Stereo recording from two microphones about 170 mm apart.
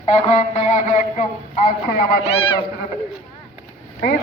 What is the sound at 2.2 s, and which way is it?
Speech, 35° left (ahead or behind).